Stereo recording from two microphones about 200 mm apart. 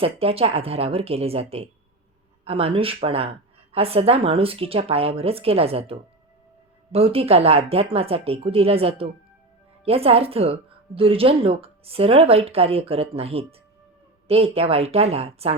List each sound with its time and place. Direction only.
0.0 s speech: 30° right (ahead or behind)